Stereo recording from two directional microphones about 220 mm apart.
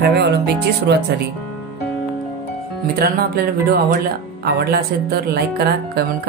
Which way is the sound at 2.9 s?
45° right (ahead or behind).